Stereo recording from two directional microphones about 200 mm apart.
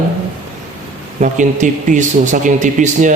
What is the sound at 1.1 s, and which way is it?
Speech, 40° right (ahead or behind).